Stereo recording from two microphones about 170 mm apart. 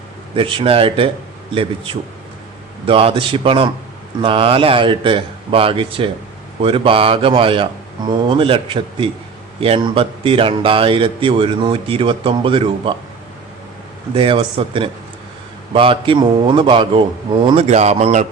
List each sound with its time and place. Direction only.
0.3 s speech: 30° right (ahead or behind)
2.8 s speech: 35° right (ahead or behind)
14.2 s speech: 35° right (ahead or behind)